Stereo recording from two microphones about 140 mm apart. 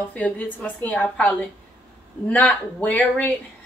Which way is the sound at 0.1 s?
10° left (ahead or behind).